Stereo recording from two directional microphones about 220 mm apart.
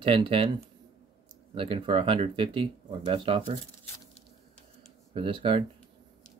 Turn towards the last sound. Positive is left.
turn(degrees=-25)  # may be behind; listen again after turning